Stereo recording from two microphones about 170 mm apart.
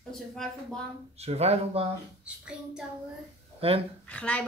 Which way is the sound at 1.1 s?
40° right (ahead or behind).